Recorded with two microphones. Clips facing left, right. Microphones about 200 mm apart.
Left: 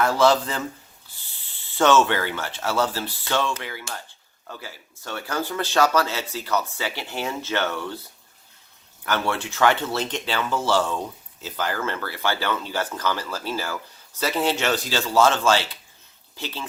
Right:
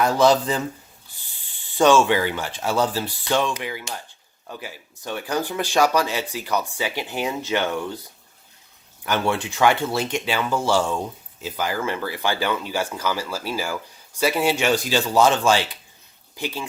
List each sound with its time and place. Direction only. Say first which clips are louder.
0.0 s speech: right 2 dB; 15° right (ahead or behind)
1.6 s speech: right 2 dB; 15° right (ahead or behind)
9.0 s speech: right 2 dB; 15° right (ahead or behind)